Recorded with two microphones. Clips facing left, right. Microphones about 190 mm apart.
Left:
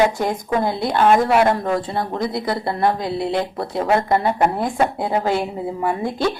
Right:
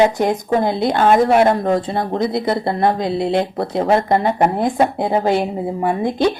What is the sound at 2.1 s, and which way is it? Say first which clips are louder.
Speech: right 7 dB; 20° right (ahead or behind).